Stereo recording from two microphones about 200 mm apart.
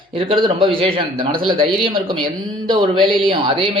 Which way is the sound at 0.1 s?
25° right (ahead or behind).